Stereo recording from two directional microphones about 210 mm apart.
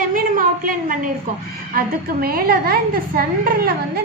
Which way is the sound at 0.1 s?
40° right (ahead or behind).